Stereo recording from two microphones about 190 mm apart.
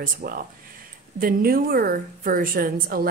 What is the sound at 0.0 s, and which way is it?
A woman's voice, 50° right (ahead or behind).